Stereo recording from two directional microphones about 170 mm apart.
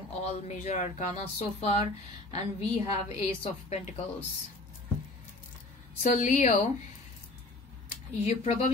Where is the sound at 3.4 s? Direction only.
35° left (ahead or behind).